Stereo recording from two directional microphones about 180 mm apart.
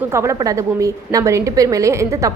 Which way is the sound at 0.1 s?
15° right (ahead or behind).